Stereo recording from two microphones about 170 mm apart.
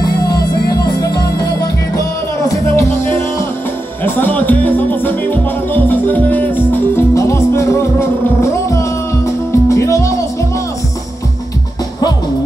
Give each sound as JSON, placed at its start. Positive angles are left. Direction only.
{"t": 0.0, "sound": "music", "side_deg": 20}